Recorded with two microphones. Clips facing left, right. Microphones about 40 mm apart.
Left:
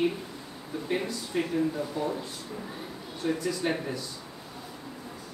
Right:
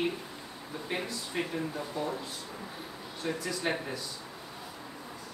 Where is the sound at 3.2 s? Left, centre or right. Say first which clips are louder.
Left 4 dB; centre.